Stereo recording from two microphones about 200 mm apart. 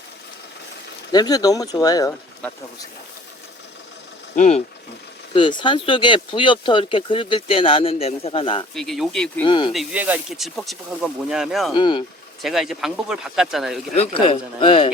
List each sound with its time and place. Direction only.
1.1 s speech: 20° left (ahead or behind)
4.4 s speech: 35° left (ahead or behind)
5.3 s speech: 25° left (ahead or behind)
8.7 s speech: centre (ahead or behind)
9.4 s speech: 25° left (ahead or behind)
9.7 s speech: 5° right (ahead or behind)
11.7 s speech: 25° left (ahead or behind)
12.4 s speech: centre (ahead or behind)
13.9 s speech: 30° left (ahead or behind)